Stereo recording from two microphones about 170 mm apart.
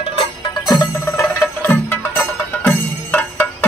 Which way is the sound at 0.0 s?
30° left (ahead or behind).